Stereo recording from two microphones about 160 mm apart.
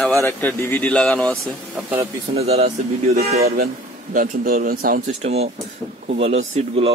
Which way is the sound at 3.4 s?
75° right (ahead or behind).